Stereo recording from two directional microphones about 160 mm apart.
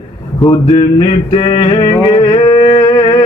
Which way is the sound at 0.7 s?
35° left (ahead or behind).